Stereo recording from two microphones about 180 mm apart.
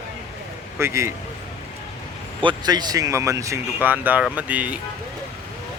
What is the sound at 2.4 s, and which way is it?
Speech, 25° right (ahead or behind).